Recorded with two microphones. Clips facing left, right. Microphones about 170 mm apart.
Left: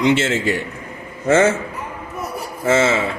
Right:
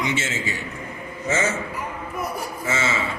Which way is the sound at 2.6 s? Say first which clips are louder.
Left 10 dB; 50° left (ahead or behind).